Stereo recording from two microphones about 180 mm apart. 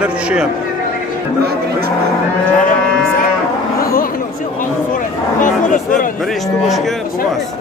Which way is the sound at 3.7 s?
55° left (ahead or behind).